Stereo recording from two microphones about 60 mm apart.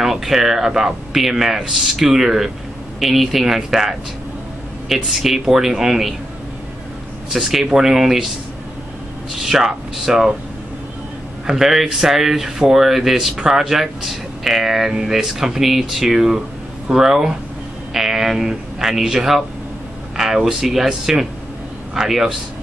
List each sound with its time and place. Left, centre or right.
0.0 s speech: centre
7.3 s speech: centre
9.3 s speech: centre
11.4 s speech: centre